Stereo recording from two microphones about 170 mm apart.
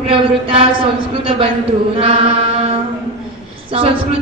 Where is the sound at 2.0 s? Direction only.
30° right (ahead or behind).